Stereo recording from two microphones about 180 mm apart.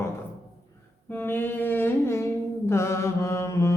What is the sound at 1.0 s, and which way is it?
Humming, 10° left (ahead or behind).